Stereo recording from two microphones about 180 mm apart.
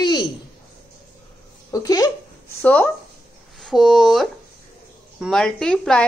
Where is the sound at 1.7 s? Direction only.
20° left (ahead or behind).